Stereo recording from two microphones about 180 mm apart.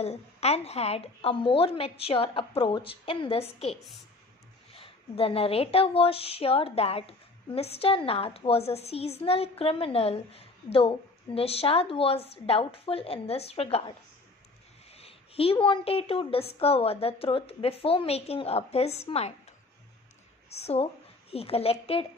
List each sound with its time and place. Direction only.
0.0 s a woman's voice: 35° left (ahead or behind)
4.7 s a woman's voice: 30° left (ahead or behind)
20.4 s a woman's voice: 35° left (ahead or behind)